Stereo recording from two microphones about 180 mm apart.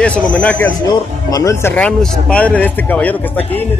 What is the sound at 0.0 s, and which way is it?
A man's voice, 5° left (ahead or behind).